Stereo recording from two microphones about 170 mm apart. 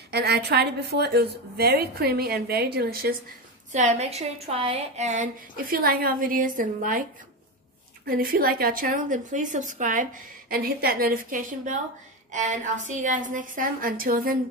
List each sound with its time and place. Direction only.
0.1 s a woman's voice: 75° right (ahead or behind)
3.7 s a woman's voice: 45° right (ahead or behind)
8.1 s a woman's voice: 60° right (ahead or behind)
10.5 s a woman's voice: 60° right (ahead or behind)